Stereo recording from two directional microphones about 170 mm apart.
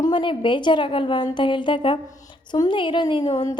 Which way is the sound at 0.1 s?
30° left (ahead or behind).